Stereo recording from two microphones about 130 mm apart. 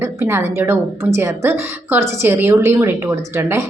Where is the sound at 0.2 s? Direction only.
20° right (ahead or behind).